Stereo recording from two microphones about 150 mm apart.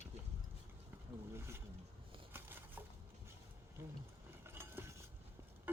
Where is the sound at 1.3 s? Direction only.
15° right (ahead or behind).